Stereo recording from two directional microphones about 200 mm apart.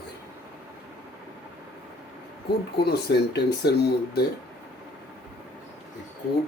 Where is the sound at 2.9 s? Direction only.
55° left (ahead or behind).